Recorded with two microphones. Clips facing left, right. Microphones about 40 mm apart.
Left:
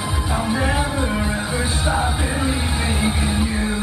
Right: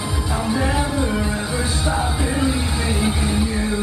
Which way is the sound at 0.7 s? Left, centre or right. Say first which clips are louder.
Even; left.